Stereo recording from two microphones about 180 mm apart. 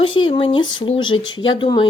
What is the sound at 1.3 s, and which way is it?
Speech, 90° left.